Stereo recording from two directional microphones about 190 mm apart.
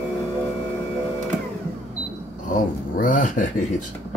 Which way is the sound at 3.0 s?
45° left (ahead or behind).